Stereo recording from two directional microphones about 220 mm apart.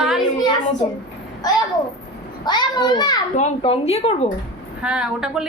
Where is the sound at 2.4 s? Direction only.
20° left (ahead or behind).